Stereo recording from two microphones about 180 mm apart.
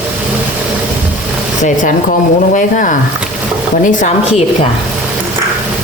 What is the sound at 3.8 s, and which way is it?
Speech, 45° left (ahead or behind).